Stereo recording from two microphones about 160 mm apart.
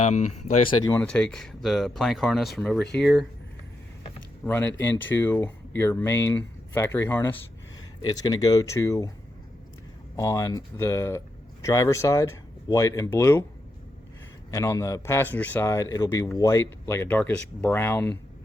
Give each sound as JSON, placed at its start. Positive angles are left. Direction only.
{"t": 0.0, "sound": "speech", "side_deg": 45}
{"t": 0.9, "sound": "speech", "side_deg": 5}
{"t": 4.4, "sound": "speech", "side_deg": 10}
{"t": 10.2, "sound": "speech", "side_deg": 20}
{"t": 14.5, "sound": "speech", "side_deg": 20}